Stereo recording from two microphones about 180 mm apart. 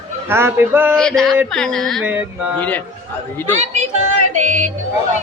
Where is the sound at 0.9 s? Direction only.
5° left (ahead or behind).